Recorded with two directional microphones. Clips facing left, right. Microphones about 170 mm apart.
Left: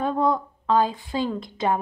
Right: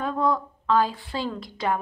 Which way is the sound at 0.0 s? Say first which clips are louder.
Left 2 dB; 25° left (ahead or behind).